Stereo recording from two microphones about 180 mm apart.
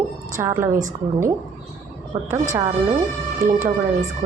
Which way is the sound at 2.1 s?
30° right (ahead or behind).